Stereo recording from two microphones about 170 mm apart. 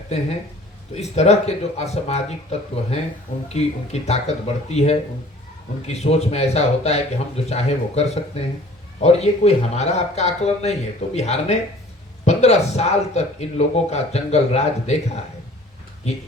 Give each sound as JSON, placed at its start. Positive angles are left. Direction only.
{"t": 0.9, "sound": "a man's voice", "side_deg": 40}